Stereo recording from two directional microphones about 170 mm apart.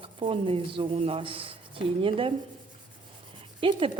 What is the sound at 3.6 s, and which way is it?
Speech, 30° right (ahead or behind).